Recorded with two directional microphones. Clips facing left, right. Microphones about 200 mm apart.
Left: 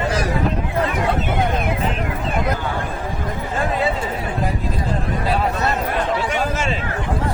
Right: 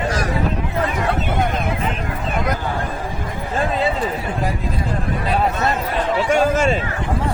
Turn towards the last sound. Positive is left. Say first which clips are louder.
# right 6 dB
turn(degrees=-45)  # may be behind; listen again after turning